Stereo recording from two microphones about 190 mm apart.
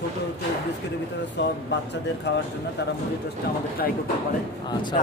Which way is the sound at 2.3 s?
60° left (ahead or behind).